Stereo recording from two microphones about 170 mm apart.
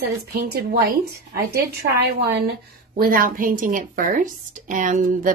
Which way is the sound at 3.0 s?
55° right (ahead or behind).